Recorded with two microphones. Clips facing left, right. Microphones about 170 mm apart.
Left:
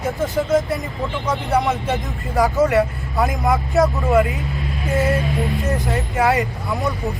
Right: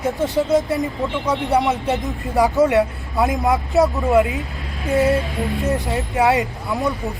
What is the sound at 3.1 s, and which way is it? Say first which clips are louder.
Speech: right 1 dB; 10° right (ahead or behind).